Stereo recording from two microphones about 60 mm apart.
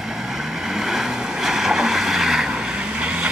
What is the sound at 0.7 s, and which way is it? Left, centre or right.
Vehicle, centre.